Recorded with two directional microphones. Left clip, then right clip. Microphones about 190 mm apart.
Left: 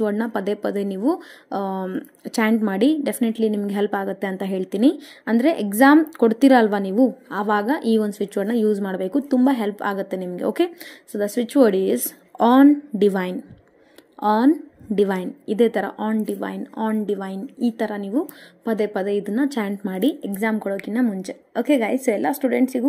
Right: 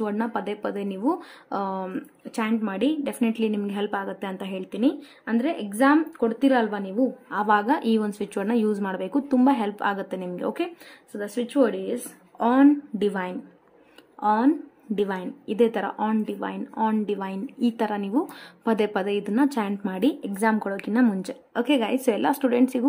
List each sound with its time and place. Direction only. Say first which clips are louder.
0.0 s speech: left 5 dB; 20° left (ahead or behind)
7.3 s a woman's voice: right 1 dB; 15° left (ahead or behind)